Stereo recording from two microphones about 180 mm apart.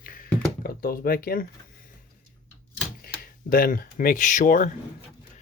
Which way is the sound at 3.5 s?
50° left (ahead or behind).